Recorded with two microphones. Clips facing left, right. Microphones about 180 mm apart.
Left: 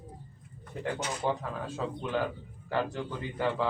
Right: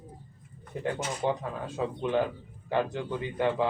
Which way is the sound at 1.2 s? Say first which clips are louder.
Right 2 dB; 25° right (ahead or behind).